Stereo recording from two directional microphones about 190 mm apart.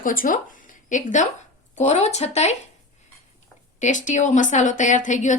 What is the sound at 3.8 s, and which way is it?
Speech, 40° left (ahead or behind).